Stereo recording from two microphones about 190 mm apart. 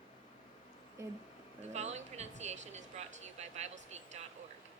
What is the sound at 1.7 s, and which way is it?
Speech, 35° right (ahead or behind).